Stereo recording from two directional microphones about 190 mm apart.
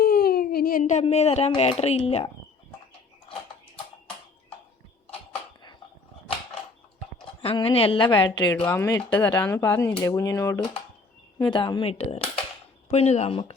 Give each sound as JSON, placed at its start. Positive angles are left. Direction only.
{"t": 0.0, "sound": "speech", "side_deg": 55}
{"t": 7.2, "sound": "speech", "side_deg": 25}
{"t": 8.5, "sound": "speech", "side_deg": 10}